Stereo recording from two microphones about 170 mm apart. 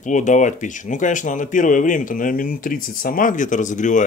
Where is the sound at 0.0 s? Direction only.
45° left (ahead or behind).